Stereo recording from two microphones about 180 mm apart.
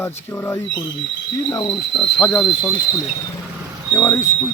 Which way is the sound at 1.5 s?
25° left (ahead or behind).